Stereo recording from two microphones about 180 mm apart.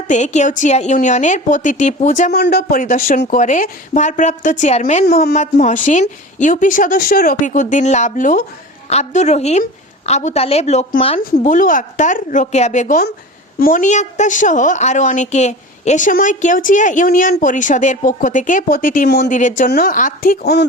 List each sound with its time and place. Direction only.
0.1 s a woman's voice: 40° left (ahead or behind)
2.3 s a woman's voice: 60° left (ahead or behind)
8.9 s a woman's voice: 40° left (ahead or behind)
11.2 s a woman's voice: 50° left (ahead or behind); by 19.3 s 65° left (ahead or behind)
19.3 s a woman's voice: 45° left (ahead or behind); by 20.7 s 65° left (ahead or behind)